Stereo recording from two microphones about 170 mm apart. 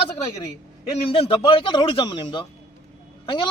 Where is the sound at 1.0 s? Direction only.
35° left (ahead or behind).